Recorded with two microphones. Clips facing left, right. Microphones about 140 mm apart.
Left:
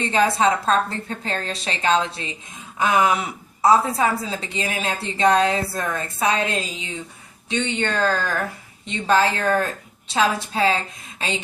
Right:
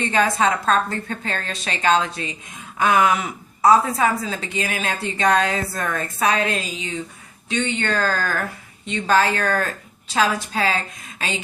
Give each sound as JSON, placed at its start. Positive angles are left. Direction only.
{"t": 0.1, "sound": "a woman's voice", "side_deg": 30}